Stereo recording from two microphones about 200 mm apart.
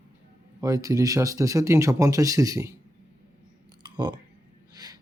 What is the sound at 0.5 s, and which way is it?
Speech, 15° right (ahead or behind).